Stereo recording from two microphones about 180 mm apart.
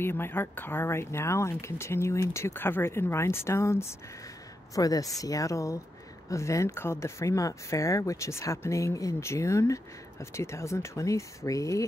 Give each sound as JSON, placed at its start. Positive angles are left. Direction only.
{"t": 0.0, "sound": "speech", "side_deg": 10}